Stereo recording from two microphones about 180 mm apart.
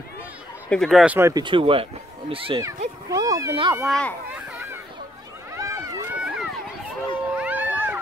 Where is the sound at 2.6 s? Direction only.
20° right (ahead or behind).